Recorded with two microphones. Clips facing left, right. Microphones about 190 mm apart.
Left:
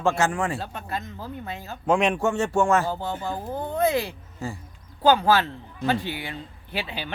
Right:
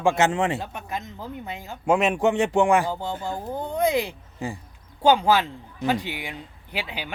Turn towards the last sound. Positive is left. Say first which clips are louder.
# left 1 dB
turn(degrees=-10)  # may be behind; listen again after turning